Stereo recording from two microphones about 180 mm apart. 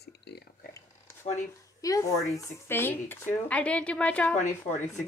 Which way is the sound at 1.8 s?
20° left (ahead or behind).